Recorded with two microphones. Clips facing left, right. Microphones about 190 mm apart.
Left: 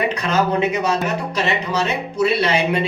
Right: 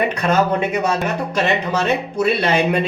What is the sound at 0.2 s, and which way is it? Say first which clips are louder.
Speech: right 6 dB; 50° right (ahead or behind).